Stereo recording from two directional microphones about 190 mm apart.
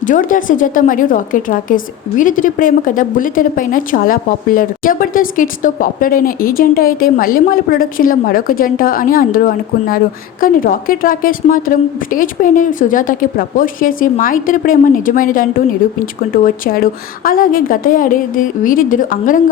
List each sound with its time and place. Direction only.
0.0 s a woman's voice: 45° left (ahead or behind)